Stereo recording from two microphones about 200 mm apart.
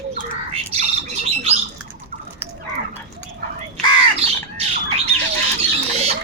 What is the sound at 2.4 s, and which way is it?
Fowl, 10° right (ahead or behind).